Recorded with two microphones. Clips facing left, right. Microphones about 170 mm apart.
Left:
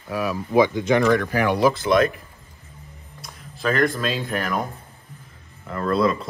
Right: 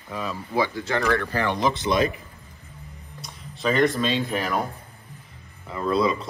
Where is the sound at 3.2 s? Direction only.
Centre (ahead or behind).